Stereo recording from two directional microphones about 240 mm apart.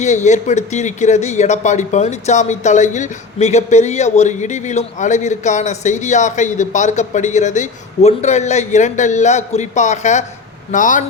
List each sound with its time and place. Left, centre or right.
0.0 s speech: left